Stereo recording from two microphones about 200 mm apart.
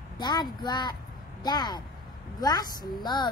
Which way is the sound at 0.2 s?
20° left (ahead or behind).